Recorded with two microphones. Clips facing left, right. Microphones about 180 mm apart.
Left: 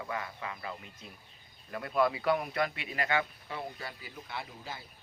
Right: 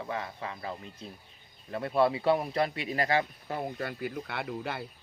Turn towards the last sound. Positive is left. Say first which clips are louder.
# right 8 dB
turn(degrees=-65)  # may be behind; listen again after turning